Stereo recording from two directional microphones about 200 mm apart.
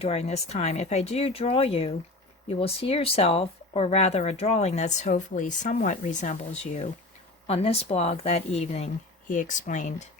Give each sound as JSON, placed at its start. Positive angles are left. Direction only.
{"t": 0.0, "sound": "speech", "side_deg": 30}